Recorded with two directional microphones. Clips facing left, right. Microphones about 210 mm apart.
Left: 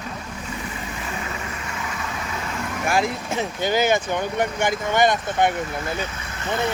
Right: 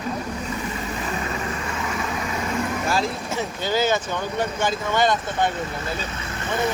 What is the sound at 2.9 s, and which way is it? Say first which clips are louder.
Speech: left 2 dB; 15° left (ahead or behind).